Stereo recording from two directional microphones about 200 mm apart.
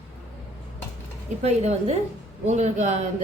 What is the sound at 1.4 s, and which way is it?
Speech, 35° right (ahead or behind).